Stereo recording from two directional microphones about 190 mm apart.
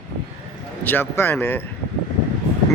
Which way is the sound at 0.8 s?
10° left (ahead or behind).